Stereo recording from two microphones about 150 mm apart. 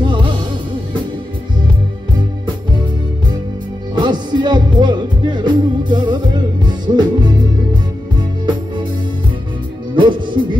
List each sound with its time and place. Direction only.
3.9 s music: 30° right (ahead or behind)
9.9 s music: 30° right (ahead or behind)